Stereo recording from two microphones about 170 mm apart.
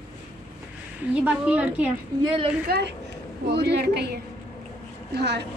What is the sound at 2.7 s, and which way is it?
A woman's voice, 65° right (ahead or behind).